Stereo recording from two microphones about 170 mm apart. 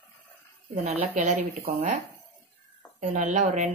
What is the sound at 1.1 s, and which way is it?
Speech, 45° right (ahead or behind).